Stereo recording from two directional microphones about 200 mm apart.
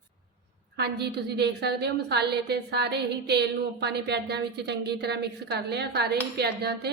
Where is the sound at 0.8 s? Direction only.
55° right (ahead or behind).